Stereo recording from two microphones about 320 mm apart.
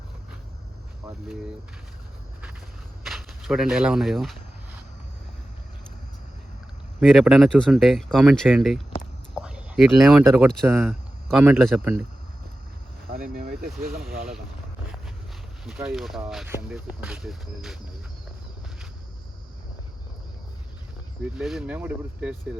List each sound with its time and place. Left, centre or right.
3.0 s speech: centre
7.0 s speech: centre
13.1 s speech: right
15.6 s speech: centre
21.2 s speech: centre